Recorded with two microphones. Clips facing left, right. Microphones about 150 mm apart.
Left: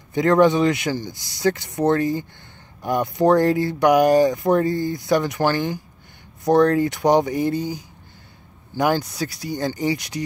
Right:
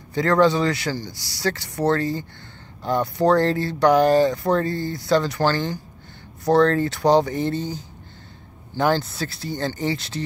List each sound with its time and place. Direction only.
0.1 s speech: 20° left (ahead or behind)
8.7 s speech: 15° left (ahead or behind)